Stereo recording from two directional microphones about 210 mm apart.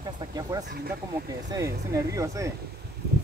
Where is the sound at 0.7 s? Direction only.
50° right (ahead or behind).